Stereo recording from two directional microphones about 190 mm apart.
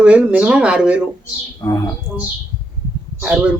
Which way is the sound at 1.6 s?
15° left (ahead or behind).